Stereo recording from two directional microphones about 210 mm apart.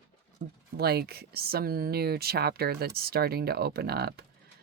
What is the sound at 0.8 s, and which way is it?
Speech, 50° right (ahead or behind).